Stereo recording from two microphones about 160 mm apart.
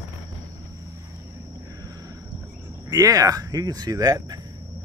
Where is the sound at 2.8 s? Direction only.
20° right (ahead or behind).